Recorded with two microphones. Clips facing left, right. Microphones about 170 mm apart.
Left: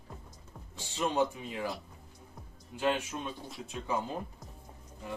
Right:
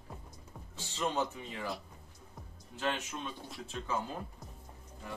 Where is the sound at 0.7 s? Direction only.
15° left (ahead or behind).